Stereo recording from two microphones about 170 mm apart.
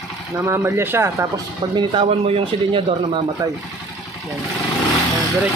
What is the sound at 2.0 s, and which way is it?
A man's voice, 35° right (ahead or behind).